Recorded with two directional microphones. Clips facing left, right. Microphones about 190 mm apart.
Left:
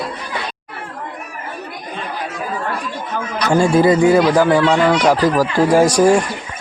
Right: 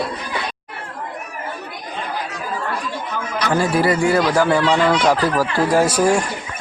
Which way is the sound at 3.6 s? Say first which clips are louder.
Left 6 dB; 20° left (ahead or behind).